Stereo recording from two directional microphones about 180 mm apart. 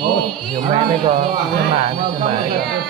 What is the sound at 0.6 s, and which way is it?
Speech, 25° right (ahead or behind).